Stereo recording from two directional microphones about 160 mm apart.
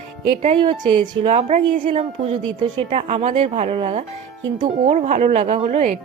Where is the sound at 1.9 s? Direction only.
40° right (ahead or behind).